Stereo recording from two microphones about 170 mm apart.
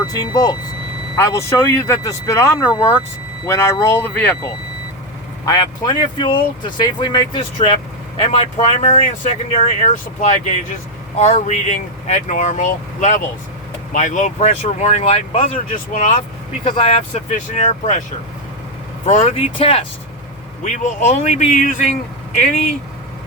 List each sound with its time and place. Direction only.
0.0 s speech: 20° left (ahead or behind)
5.5 s speech: 25° left (ahead or behind)
15.5 s speech: 50° left (ahead or behind)
16.6 s speech: 30° left (ahead or behind)
19.0 s speech: 45° left (ahead or behind)
19.5 s speech: 30° left (ahead or behind)
20.7 s speech: 45° left (ahead or behind)